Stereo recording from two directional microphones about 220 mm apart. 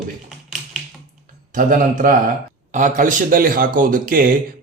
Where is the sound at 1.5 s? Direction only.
35° right (ahead or behind).